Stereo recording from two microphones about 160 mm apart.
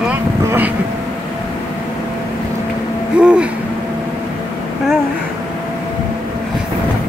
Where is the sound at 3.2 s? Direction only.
5° right (ahead or behind).